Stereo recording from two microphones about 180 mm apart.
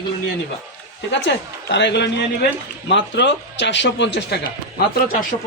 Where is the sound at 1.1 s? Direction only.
75° left (ahead or behind).